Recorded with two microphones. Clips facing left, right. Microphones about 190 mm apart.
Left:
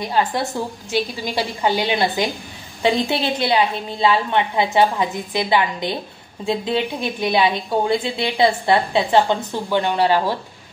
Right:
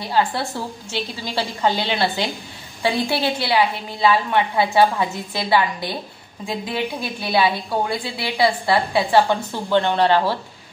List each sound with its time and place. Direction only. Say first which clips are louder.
0.0 s a woman's voice: left 1 dB; 20° left (ahead or behind)